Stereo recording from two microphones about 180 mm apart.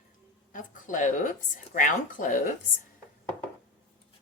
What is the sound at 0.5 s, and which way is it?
Speech, 50° left (ahead or behind).